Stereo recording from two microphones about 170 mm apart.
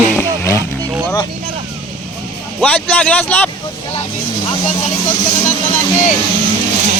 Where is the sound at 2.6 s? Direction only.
10° left (ahead or behind).